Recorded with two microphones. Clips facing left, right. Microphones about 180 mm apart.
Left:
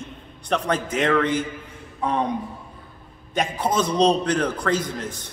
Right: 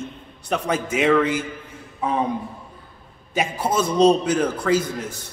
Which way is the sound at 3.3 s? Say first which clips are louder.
Right 1 dB; 5° right (ahead or behind).